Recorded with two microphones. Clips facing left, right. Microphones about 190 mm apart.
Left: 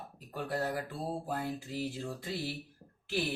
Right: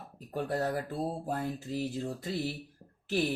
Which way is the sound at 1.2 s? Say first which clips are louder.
Right 2 dB; 45° right (ahead or behind).